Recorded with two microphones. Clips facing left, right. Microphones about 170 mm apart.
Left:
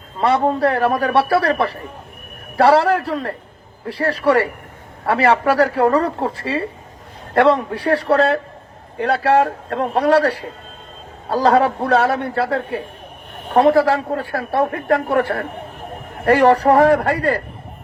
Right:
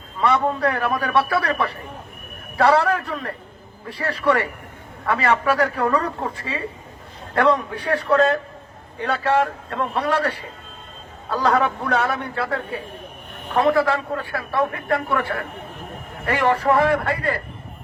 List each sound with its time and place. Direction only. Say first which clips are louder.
0.2 s a man's voice: left 4 dB; 30° left (ahead or behind)
7.3 s a man's voice: left 4 dB; 30° left (ahead or behind)
9.6 s a man's voice: left 5 dB; 55° left (ahead or behind)
10.0 s a man's voice: left 9 dB; 35° left (ahead or behind)